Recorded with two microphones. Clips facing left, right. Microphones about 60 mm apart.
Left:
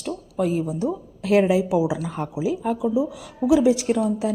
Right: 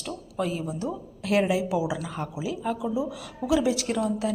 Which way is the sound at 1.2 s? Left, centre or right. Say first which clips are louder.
Left 5 dB; left.